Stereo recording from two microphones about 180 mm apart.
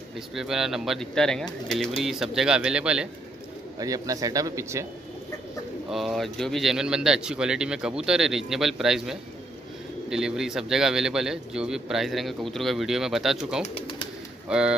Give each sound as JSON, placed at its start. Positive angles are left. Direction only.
{"t": 0.3, "sound": "a man's voice", "side_deg": 0}
{"t": 3.8, "sound": "speech", "side_deg": -20}
{"t": 5.9, "sound": "a man's voice", "side_deg": 0}
{"t": 13.7, "sound": "bird", "side_deg": 30}
{"t": 14.5, "sound": "a man's voice", "side_deg": -5}